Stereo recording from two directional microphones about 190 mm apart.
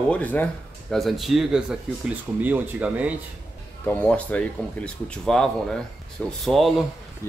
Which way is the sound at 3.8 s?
10° left (ahead or behind).